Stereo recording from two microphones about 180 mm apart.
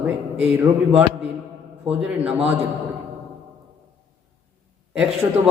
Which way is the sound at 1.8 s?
5° right (ahead or behind).